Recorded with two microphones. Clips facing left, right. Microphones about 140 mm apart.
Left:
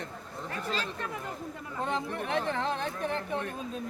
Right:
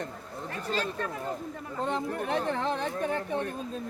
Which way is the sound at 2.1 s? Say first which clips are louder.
Right 2 dB; 40° right (ahead or behind).